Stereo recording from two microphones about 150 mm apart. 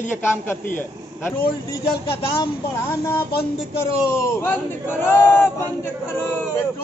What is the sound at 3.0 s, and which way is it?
Speech, 15° left (ahead or behind).